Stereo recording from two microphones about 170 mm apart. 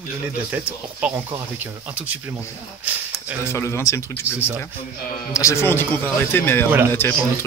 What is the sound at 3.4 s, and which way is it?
Speech, 15° left (ahead or behind).